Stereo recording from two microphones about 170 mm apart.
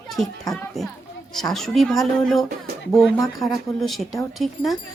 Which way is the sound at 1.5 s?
Centre (ahead or behind).